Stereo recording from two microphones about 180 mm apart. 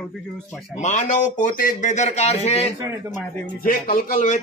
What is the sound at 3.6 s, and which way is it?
Speech, 55° left (ahead or behind).